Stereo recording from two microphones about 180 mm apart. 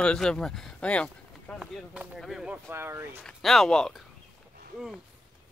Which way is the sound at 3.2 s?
Centre (ahead or behind).